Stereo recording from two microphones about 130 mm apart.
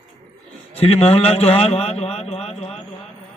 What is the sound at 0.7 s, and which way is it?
A man's voice, 50° left (ahead or behind).